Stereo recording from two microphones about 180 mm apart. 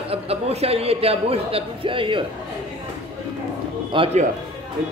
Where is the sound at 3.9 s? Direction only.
25° right (ahead or behind).